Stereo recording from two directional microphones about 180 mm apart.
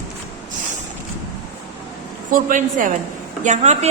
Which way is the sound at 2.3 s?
45° right (ahead or behind).